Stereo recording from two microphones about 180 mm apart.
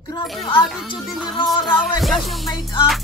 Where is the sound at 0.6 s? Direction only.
Centre (ahead or behind).